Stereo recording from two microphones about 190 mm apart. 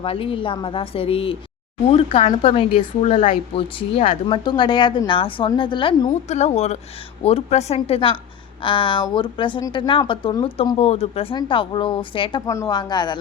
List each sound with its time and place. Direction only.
0.0 s speech: 30° left (ahead or behind)
6.2 s speech: 35° left (ahead or behind)